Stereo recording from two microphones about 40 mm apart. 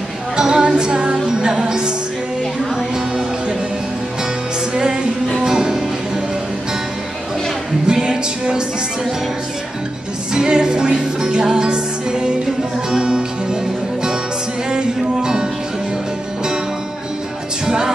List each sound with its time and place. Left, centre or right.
0.4 s music: centre
4.7 s music: right
7.8 s music: centre
10.3 s music: centre
14.7 s music: centre
17.6 s music: centre